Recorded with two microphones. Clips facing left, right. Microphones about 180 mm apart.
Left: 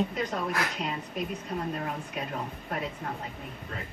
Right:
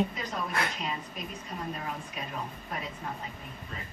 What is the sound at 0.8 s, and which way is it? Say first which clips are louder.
Speech: left 3 dB; 60° left (ahead or behind).